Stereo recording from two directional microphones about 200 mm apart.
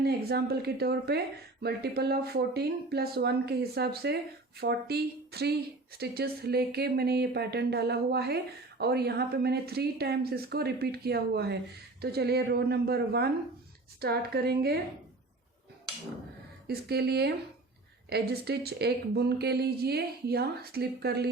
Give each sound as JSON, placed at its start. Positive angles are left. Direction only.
{"t": 0.0, "sound": "speech", "side_deg": -55}
{"t": 16.6, "sound": "speech", "side_deg": -50}